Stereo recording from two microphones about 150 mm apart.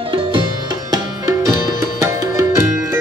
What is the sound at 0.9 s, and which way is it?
Music, 25° right (ahead or behind).